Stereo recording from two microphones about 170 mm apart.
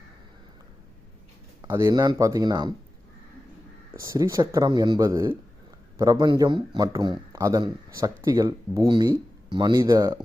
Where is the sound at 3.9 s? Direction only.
20° right (ahead or behind).